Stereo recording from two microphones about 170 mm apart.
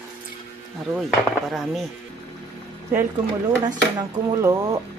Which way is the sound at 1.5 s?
Centre (ahead or behind).